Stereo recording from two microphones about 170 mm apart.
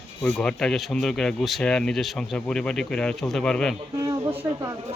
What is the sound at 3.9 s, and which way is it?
Speech, 20° right (ahead or behind).